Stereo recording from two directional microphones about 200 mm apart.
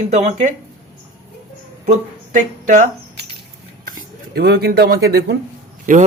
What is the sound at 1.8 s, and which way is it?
Speech, 35° right (ahead or behind).